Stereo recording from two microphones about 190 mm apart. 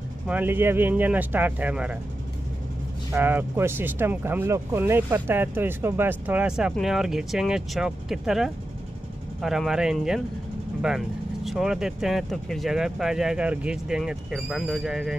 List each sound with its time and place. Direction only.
0.3 s speech: 10° right (ahead or behind)
3.1 s speech: 10° right (ahead or behind)